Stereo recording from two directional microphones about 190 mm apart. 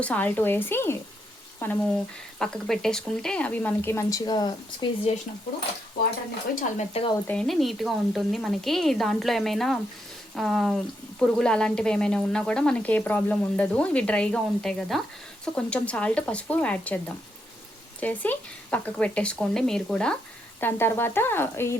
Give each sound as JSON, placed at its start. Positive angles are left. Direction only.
{"t": 0.0, "sound": "speech", "side_deg": 10}
{"t": 5.1, "sound": "speech", "side_deg": 35}
{"t": 6.6, "sound": "speech", "side_deg": 35}
{"t": 7.3, "sound": "a woman's voice", "side_deg": 5}